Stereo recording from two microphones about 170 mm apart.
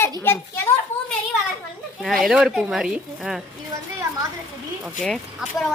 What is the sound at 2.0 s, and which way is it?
Speech, centre (ahead or behind).